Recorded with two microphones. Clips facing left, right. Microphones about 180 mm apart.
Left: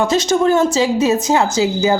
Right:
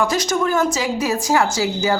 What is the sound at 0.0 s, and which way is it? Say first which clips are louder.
A man's voice: left 5 dB; 25° left (ahead or behind).